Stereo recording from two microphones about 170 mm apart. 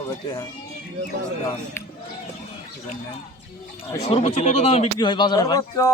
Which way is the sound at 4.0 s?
35° left (ahead or behind).